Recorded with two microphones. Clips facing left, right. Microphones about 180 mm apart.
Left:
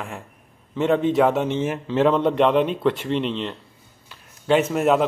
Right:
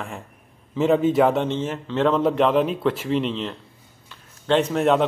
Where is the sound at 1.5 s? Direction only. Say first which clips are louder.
Left 2 dB; 10° left (ahead or behind).